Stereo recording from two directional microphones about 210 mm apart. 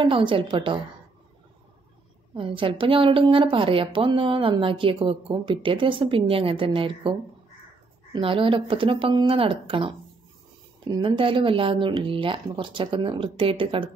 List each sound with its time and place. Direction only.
0.0 s a woman's voice: 25° right (ahead or behind)
2.3 s a woman's voice: 25° right (ahead or behind)